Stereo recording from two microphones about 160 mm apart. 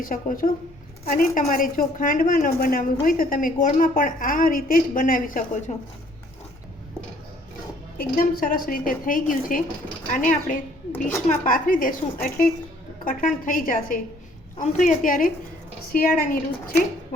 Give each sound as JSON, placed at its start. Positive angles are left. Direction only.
{"t": 0.0, "sound": "a woman's voice", "side_deg": 60}
{"t": 7.9, "sound": "a woman's voice", "side_deg": 65}